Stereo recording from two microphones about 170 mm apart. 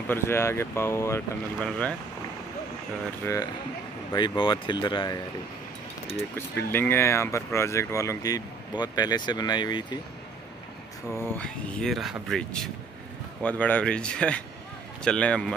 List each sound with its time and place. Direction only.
0.1 s speech: 15° left (ahead or behind)
4.1 s speech: 25° left (ahead or behind)
6.1 s speech: 15° left (ahead or behind)
11.1 s speech: 15° left (ahead or behind)